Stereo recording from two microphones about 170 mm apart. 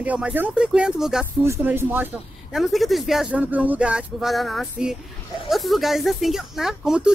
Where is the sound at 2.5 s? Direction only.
Centre (ahead or behind).